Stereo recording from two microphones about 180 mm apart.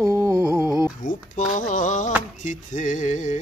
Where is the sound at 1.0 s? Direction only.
45° left (ahead or behind).